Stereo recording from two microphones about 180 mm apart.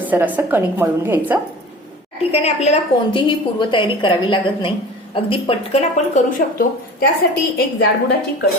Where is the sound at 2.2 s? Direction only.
35° left (ahead or behind); by 7.9 s 60° left (ahead or behind).